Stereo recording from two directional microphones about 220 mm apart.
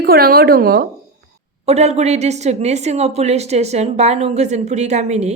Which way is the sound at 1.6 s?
30° right (ahead or behind).